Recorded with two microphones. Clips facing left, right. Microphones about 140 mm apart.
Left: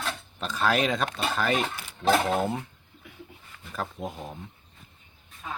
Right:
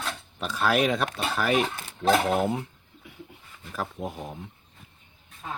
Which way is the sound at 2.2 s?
20° right (ahead or behind).